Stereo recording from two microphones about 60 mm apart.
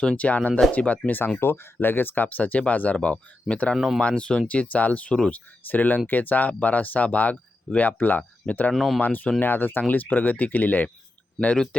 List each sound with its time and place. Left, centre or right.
0.0 s speech: centre
1.4 s speech: left; by 3.8 s centre
3.8 s speech: centre
4.0 s speech: centre
8.7 s speech: centre
9.0 s speech: left